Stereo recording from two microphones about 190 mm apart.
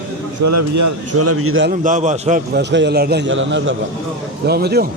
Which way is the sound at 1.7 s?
45° right (ahead or behind).